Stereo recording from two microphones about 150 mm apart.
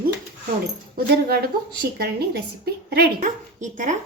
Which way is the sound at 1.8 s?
90° right.